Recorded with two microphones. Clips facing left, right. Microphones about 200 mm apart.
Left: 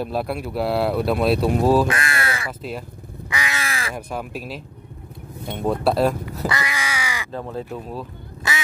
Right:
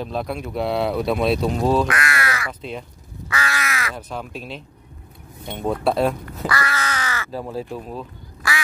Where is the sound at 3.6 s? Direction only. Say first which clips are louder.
Right 1 dB; 30° left (ahead or behind).